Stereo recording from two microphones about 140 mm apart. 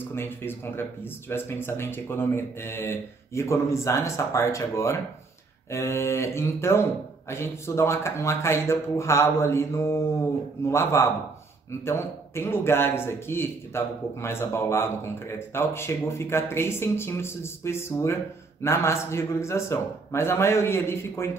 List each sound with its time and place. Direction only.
0.1 s a man's voice: 15° left (ahead or behind)